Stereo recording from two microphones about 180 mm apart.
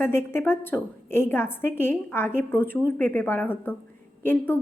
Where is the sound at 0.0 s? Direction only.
15° left (ahead or behind).